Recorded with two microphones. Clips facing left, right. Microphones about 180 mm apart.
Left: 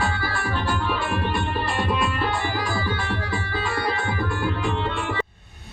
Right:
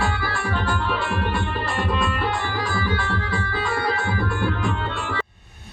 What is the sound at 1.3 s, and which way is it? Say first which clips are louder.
Music: even; 15° left (ahead or behind).